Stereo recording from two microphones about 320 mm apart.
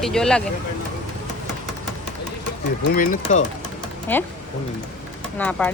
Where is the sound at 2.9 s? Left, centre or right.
Left.